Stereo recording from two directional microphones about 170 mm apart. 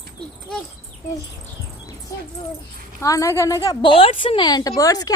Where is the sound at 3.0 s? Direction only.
20° left (ahead or behind).